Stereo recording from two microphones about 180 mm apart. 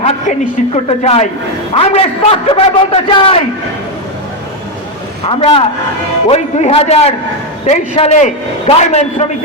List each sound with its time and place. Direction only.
0.0 s a man's voice: 40° left (ahead or behind)
5.3 s a man's voice: 30° left (ahead or behind)